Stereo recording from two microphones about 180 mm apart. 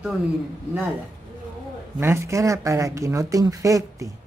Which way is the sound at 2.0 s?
15° right (ahead or behind).